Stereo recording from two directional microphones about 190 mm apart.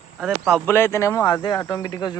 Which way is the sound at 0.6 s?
10° left (ahead or behind).